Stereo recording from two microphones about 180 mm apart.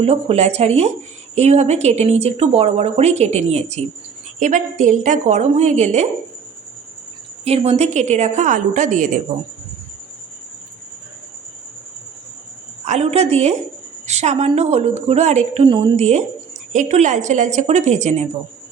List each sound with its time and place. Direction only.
0.0 s speech: 35° right (ahead or behind)
7.4 s speech: 35° right (ahead or behind)
12.8 s speech: 40° right (ahead or behind)